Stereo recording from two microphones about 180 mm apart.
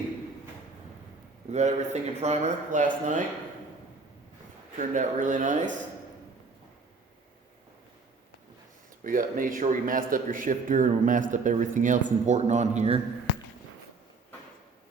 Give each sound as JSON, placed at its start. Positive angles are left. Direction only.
{"t": 1.5, "sound": "speech", "side_deg": -40}
{"t": 4.8, "sound": "a man's voice", "side_deg": -45}
{"t": 9.0, "sound": "a man's voice", "side_deg": -50}